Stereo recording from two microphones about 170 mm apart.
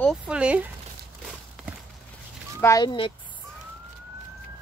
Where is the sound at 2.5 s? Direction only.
20° left (ahead or behind).